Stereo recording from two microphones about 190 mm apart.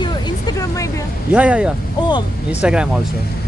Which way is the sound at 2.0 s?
25° left (ahead or behind).